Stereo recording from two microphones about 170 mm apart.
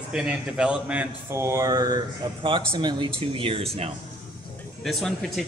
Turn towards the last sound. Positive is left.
turn(degrees=0)  # may be behind; listen again after turning